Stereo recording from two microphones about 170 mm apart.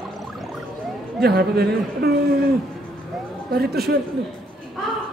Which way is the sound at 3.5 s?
65° right (ahead or behind).